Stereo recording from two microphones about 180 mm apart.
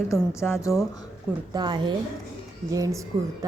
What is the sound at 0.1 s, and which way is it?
Speech, 15° left (ahead or behind).